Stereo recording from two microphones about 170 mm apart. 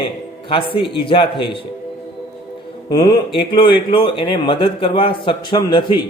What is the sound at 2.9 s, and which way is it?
Speech, 25° left (ahead or behind).